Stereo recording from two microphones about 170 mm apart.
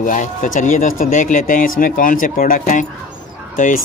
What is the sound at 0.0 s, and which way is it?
Speech, 50° left (ahead or behind).